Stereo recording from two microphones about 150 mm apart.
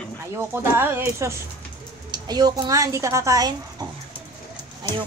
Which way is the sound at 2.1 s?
25° right (ahead or behind).